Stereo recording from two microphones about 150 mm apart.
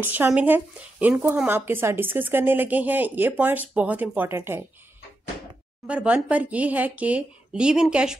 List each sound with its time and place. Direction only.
0.0 s speech: 15° right (ahead or behind)
5.9 s speech: 10° right (ahead or behind)